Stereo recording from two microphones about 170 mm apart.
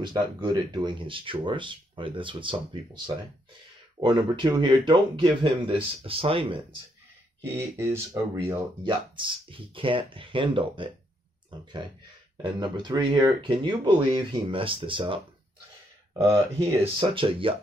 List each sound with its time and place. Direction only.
0.0 s speech: 25° right (ahead or behind)
7.4 s speech: 15° right (ahead or behind)
8.8 s speech: 30° right (ahead or behind)
17.0 s speech: 30° right (ahead or behind)